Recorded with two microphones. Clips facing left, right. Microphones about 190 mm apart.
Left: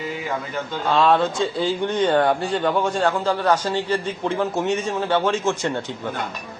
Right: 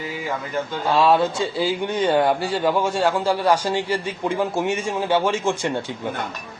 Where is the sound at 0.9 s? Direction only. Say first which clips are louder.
Even; 5° right (ahead or behind).